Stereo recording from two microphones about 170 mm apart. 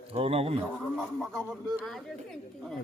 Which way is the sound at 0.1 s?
35° right (ahead or behind).